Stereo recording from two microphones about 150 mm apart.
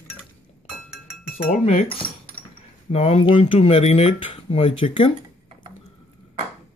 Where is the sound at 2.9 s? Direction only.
40° left (ahead or behind).